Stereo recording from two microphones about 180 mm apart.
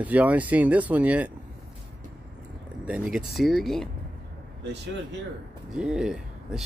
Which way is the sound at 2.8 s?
5° right (ahead or behind).